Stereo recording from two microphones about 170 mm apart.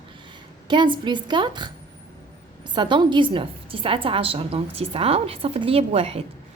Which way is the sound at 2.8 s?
30° right (ahead or behind).